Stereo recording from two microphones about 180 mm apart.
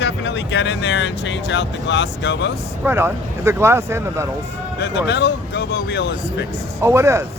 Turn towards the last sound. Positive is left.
turn(degrees=-15)  # may be behind; listen again after turning